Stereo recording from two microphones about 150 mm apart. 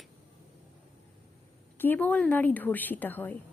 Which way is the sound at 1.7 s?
15° left (ahead or behind).